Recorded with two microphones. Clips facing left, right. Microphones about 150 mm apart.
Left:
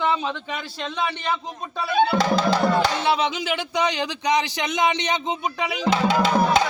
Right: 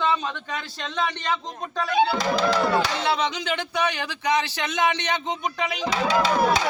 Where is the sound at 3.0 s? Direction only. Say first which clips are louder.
Left 2 dB; 10° left (ahead or behind).